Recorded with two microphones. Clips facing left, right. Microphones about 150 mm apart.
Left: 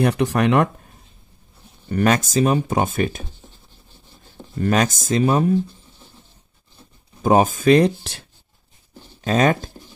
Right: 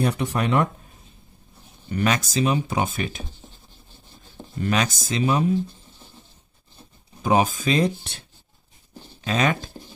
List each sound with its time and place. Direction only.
0.0 s speech: 80° left
1.9 s speech: 45° left (ahead or behind)
4.6 s speech: 45° left (ahead or behind)
7.2 s speech: 45° left (ahead or behind); by 8.2 s 75° left (ahead or behind)
9.2 s speech: 45° left (ahead or behind)